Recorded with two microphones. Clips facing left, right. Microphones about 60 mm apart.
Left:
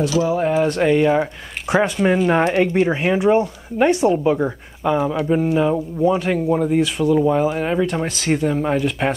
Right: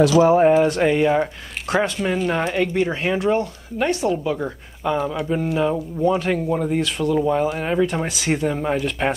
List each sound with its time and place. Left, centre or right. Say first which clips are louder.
0.1 s speech: right 5 dB; right
0.6 s speech: left 1 dB; centre